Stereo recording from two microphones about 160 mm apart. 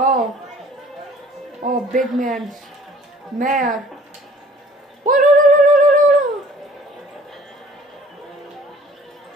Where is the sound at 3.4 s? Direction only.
55° right (ahead or behind).